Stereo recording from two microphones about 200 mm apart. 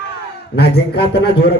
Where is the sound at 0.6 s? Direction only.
55° left (ahead or behind).